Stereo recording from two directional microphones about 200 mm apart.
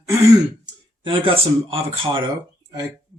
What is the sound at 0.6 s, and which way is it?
Speech, 25° right (ahead or behind).